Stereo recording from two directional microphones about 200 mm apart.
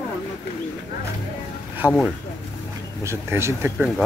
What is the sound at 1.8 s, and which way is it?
Speech, 10° right (ahead or behind).